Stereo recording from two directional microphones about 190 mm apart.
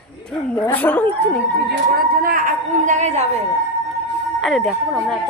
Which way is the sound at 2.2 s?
45° right (ahead or behind).